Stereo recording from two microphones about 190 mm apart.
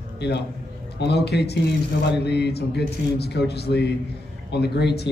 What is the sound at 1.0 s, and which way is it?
A man's voice, 60° left (ahead or behind).